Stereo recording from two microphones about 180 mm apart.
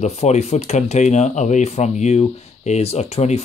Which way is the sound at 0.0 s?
35° left (ahead or behind).